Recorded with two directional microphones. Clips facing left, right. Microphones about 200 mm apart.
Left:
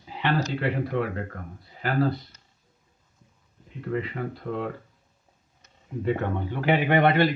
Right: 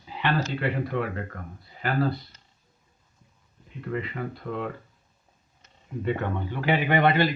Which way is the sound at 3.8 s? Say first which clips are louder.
Left 2 dB; 35° left (ahead or behind).